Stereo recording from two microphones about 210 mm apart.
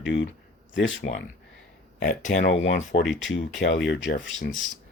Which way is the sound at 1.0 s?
45° left (ahead or behind).